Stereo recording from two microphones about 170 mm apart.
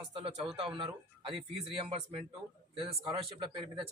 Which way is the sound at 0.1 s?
30° right (ahead or behind).